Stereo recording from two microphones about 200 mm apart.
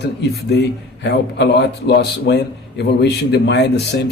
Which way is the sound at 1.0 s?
60° left (ahead or behind).